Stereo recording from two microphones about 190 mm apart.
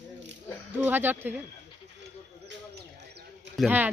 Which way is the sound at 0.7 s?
10° right (ahead or behind).